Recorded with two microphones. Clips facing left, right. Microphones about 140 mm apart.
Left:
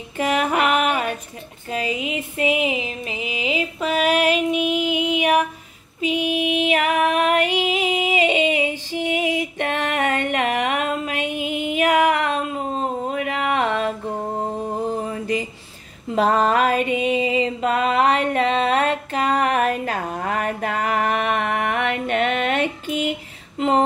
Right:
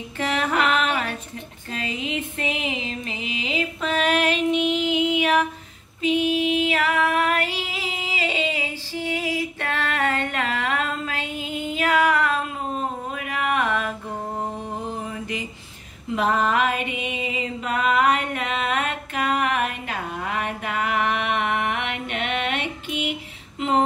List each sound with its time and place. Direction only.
0.2 s music: 15° left (ahead or behind)
1.7 s a sound: 10° left (ahead or behind)
5.9 s female singing: 10° left (ahead or behind)
13.1 s a sound: 25° left (ahead or behind)
14.9 s mantra: 40° left (ahead or behind)
16.2 s music: 35° left (ahead or behind)